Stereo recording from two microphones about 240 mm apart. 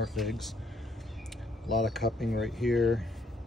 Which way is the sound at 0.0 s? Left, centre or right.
Centre.